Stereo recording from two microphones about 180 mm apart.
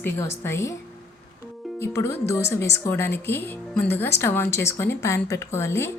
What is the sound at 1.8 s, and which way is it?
Speech, 15° left (ahead or behind).